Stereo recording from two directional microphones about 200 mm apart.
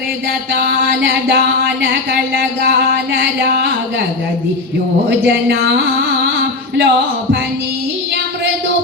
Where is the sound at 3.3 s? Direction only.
50° right (ahead or behind).